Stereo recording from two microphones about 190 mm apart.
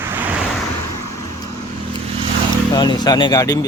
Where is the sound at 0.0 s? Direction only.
10° right (ahead or behind).